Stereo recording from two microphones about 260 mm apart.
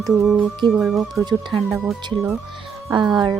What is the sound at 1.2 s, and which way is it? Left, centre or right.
Speech, centre.